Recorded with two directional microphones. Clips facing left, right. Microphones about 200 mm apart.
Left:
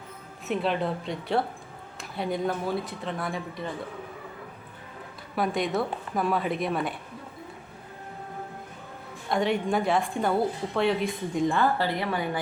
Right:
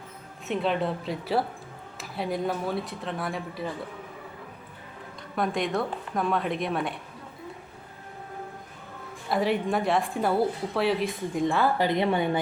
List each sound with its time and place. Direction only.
0.4 s a woman's voice: centre (ahead or behind)
5.4 s a woman's voice: centre (ahead or behind)
9.3 s a woman's voice: 5° right (ahead or behind)
11.9 s a woman's voice: 25° right (ahead or behind)